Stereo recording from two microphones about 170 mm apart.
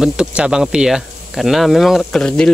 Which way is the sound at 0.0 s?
5° right (ahead or behind).